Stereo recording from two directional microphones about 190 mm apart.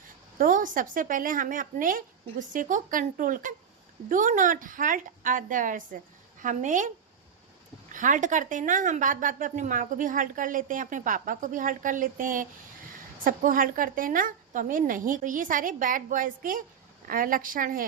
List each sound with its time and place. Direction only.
0.3 s a woman's voice: 45° right (ahead or behind)
7.9 s a woman's voice: 40° right (ahead or behind)